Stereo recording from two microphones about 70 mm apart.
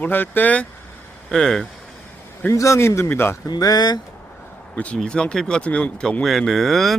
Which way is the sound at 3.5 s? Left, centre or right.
Left.